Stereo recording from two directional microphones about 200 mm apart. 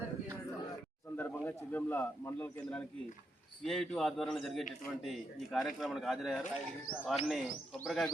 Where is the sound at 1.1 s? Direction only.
10° left (ahead or behind).